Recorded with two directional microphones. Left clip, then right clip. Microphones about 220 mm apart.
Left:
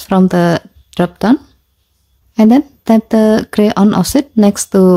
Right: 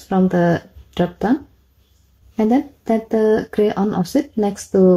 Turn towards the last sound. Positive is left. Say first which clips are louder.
# left 5 dB
turn(degrees=35)  # may be behind; listen again after turning